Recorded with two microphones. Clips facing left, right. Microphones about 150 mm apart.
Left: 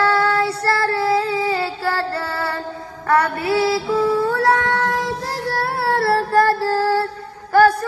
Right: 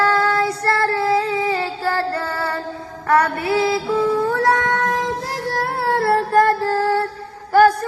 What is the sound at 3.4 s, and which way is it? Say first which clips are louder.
Female singing: even; 20° right (ahead or behind).